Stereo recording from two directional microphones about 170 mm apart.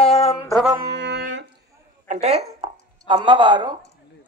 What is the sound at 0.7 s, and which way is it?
Music, 90° right.